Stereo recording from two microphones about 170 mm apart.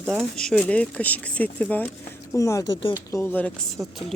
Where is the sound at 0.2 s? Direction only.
5° left (ahead or behind).